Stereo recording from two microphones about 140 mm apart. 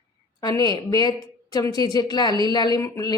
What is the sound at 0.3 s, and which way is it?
A woman's voice, 25° left (ahead or behind).